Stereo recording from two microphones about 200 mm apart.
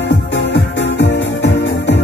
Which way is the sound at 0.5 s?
65° left (ahead or behind).